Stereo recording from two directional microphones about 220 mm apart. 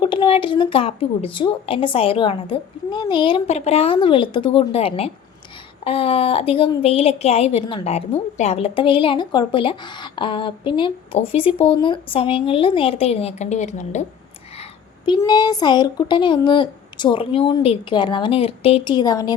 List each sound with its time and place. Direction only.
0.0 s a woman's voice: 20° left (ahead or behind)
14.6 s a woman's voice: 20° left (ahead or behind)